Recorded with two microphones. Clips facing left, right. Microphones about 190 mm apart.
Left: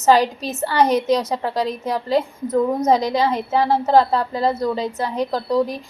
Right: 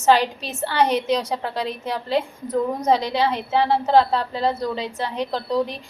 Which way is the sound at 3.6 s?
10° left (ahead or behind).